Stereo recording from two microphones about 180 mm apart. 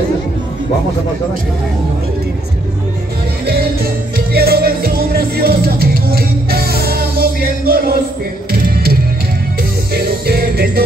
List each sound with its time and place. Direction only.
4.3 s music: 60° right (ahead or behind)